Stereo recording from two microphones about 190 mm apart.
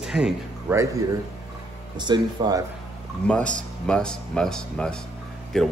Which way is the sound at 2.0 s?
25° right (ahead or behind).